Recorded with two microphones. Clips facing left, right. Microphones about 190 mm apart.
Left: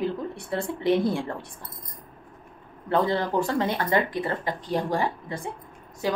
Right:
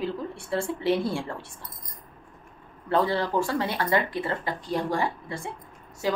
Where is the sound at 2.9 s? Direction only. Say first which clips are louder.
Left 1 dB; 20° left (ahead or behind).